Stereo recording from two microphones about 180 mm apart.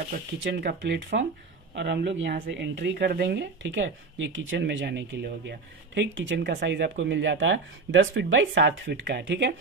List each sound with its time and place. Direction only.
0.4 s speech: 70° right (ahead or behind)